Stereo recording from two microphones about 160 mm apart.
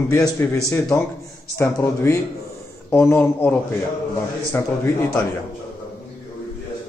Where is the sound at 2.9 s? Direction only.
15° left (ahead or behind).